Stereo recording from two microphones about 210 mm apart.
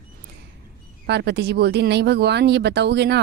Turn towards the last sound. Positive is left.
turn(degrees=-55)  # may be behind; listen again after turning